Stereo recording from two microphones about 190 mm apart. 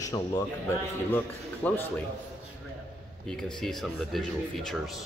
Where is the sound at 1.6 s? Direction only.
10° left (ahead or behind).